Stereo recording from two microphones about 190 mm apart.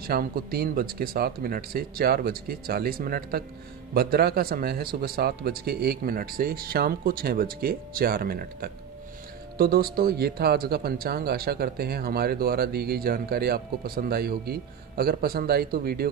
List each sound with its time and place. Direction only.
0.0 s speech: 55° right (ahead or behind)